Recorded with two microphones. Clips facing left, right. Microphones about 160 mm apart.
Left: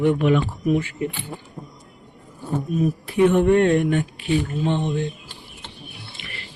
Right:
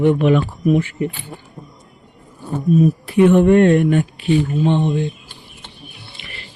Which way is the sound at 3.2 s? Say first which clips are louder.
Right 5 dB; 70° right (ahead or behind).